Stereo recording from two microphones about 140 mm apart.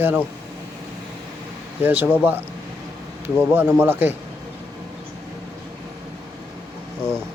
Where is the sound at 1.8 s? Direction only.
15° right (ahead or behind).